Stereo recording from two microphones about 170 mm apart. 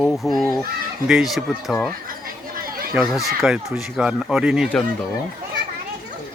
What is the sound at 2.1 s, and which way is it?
Chatter, 60° right (ahead or behind).